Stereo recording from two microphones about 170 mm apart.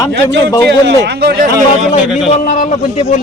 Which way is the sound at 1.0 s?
75° right (ahead or behind).